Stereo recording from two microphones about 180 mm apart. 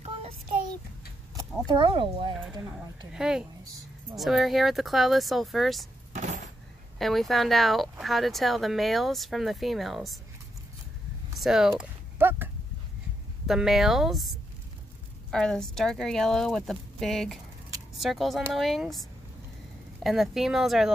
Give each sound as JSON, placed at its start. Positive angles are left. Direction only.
{"t": 1.7, "sound": "speech", "side_deg": -25}
{"t": 3.1, "sound": "speech", "side_deg": -5}
{"t": 6.1, "sound": "a sound", "side_deg": -45}
{"t": 7.0, "sound": "speech", "side_deg": 0}
{"t": 11.3, "sound": "a sound", "side_deg": 0}
{"t": 13.5, "sound": "speech", "side_deg": 0}
{"t": 15.3, "sound": "speech", "side_deg": 5}